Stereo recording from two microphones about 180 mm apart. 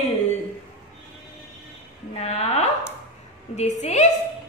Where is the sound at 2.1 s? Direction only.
35° left (ahead or behind).